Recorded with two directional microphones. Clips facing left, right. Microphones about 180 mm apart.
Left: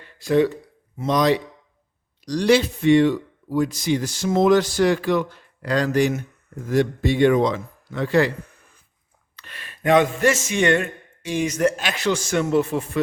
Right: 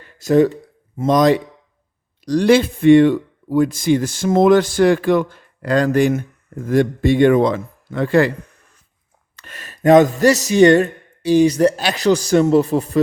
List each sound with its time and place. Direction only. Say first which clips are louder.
0.2 s speech: right 5 dB; 45° right (ahead or behind)
9.3 s a man's voice: right 4 dB; 45° right (ahead or behind)